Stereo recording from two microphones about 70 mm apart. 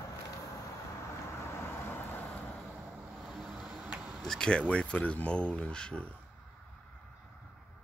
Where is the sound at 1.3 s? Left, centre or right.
Left.